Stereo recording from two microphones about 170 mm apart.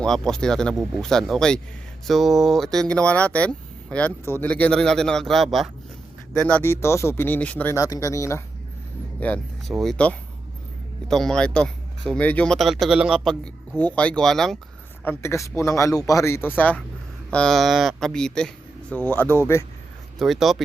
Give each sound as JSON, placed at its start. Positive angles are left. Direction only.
{"t": 0.0, "sound": "speech", "side_deg": 5}
{"t": 15.0, "sound": "speech", "side_deg": 15}
{"t": 20.1, "sound": "speech", "side_deg": 0}